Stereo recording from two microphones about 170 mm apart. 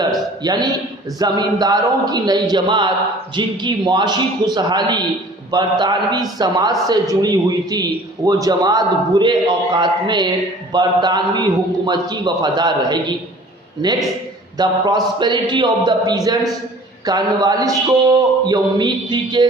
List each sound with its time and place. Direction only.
0.0 s a sound: 25° right (ahead or behind)
1.2 s a man's voice: 25° right (ahead or behind)
14.6 s a man's voice: 25° right (ahead or behind)